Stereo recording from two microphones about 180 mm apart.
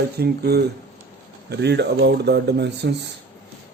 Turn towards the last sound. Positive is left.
turn(degrees=-70)  # may be behind; listen again after turning